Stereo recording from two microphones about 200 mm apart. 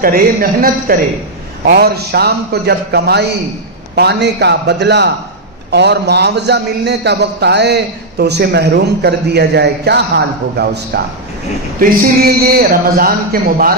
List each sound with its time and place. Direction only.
0.0 s a man's voice: 45° right (ahead or behind)